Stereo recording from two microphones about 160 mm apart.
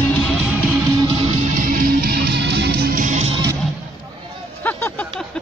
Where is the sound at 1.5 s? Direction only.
65° right (ahead or behind); by 3.4 s 45° right (ahead or behind).